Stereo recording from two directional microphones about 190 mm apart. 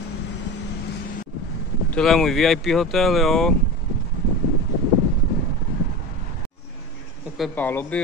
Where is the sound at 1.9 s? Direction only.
Centre (ahead or behind).